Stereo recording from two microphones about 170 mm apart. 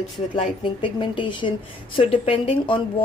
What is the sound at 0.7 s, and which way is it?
Speech, 30° left (ahead or behind).